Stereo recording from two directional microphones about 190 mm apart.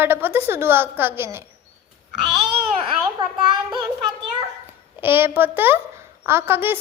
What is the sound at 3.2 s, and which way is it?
Child singing, 25° right (ahead or behind).